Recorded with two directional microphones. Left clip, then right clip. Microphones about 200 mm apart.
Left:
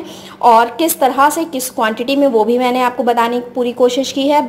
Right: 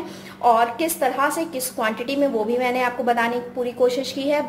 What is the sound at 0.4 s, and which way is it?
A woman's voice, 30° left (ahead or behind).